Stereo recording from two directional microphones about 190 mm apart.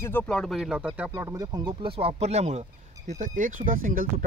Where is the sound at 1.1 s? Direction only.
15° right (ahead or behind).